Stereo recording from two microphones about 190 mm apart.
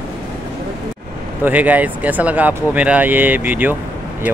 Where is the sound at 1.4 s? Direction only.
10° right (ahead or behind).